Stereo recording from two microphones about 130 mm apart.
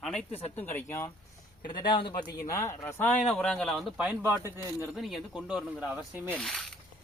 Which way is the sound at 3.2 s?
5° left (ahead or behind).